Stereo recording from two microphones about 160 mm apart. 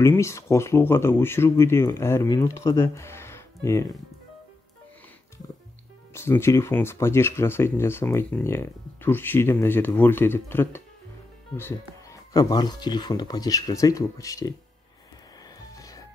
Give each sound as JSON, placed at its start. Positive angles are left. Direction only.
{"t": 0.0, "sound": "speech", "side_deg": 15}
{"t": 6.1, "sound": "speech", "side_deg": 15}
{"t": 15.7, "sound": "music", "side_deg": 20}